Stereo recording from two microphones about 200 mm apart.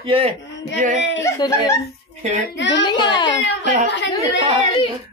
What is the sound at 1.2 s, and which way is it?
Speech, 15° left (ahead or behind).